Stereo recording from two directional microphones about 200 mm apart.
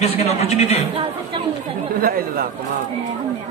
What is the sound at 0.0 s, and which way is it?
Speech, 30° left (ahead or behind).